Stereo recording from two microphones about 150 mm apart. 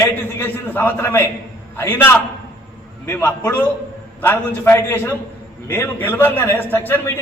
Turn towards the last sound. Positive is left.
turn(degrees=15)  # may be behind; listen again after turning